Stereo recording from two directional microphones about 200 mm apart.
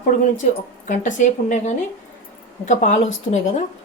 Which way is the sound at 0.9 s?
40° left (ahead or behind).